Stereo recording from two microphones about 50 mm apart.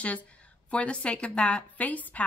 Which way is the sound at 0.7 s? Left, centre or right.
Left.